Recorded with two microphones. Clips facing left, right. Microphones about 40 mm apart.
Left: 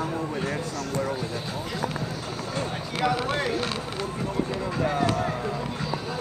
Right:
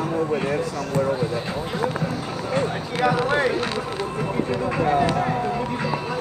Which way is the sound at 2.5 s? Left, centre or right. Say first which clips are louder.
Right 8 dB; right.